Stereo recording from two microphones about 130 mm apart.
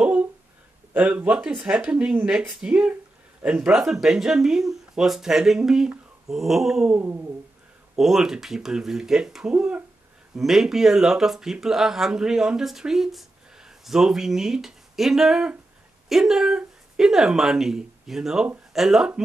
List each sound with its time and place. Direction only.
0.0 s a sound: 15° right (ahead or behind)
0.9 s speech: 10° right (ahead or behind)
7.0 s speech: 15° right (ahead or behind)
7.9 s speech: 5° right (ahead or behind)